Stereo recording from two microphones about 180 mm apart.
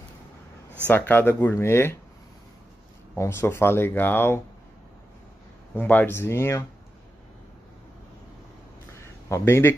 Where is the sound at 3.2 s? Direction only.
15° left (ahead or behind).